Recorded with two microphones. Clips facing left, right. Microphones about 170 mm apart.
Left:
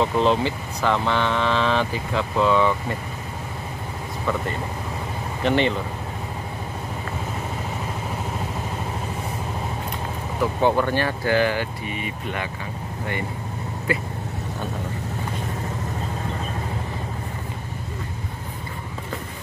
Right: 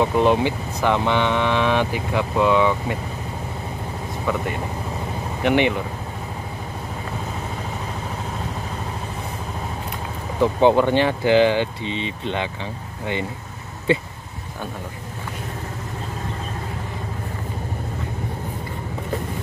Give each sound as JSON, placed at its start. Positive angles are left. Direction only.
{"t": 0.0, "sound": "speech", "side_deg": -15}
{"t": 5.4, "sound": "speech", "side_deg": -10}
{"t": 10.4, "sound": "speech", "side_deg": -20}